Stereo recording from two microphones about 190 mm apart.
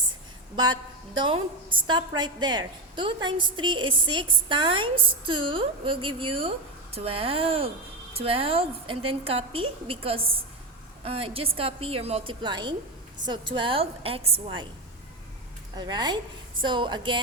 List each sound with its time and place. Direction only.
0.5 s a woman's voice: 20° right (ahead or behind)
15.7 s a woman's voice: 20° right (ahead or behind)